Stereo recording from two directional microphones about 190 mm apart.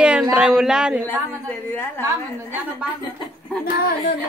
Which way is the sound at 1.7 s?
10° left (ahead or behind).